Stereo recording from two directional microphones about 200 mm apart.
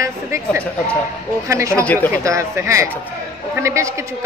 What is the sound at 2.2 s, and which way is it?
A woman's voice, 15° right (ahead or behind).